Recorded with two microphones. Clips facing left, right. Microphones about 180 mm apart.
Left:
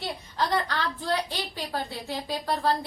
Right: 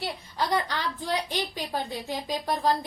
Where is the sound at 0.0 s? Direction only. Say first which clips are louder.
Left 1 dB; 10° right (ahead or behind).